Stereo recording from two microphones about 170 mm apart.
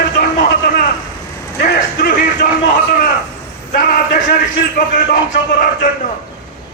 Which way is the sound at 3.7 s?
50° left (ahead or behind).